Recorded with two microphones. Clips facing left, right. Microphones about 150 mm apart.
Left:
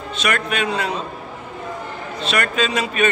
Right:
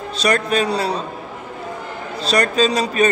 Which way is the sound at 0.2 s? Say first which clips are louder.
Right 4 dB; 35° right (ahead or behind).